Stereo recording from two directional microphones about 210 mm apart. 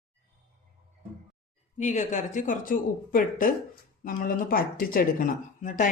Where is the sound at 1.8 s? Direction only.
35° left (ahead or behind).